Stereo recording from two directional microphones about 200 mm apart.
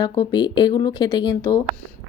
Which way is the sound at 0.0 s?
20° left (ahead or behind).